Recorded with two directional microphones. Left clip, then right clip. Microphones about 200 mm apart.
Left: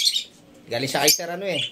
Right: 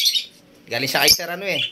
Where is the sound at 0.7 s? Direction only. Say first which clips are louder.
Right 4 dB; 5° right (ahead or behind).